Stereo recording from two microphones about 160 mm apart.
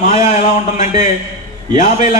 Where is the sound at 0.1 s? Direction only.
45° left (ahead or behind).